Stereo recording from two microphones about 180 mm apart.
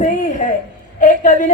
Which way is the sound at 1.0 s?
45° left (ahead or behind).